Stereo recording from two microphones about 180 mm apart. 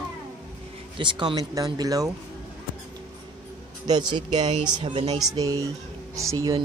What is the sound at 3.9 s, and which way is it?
Speech, 25° right (ahead or behind).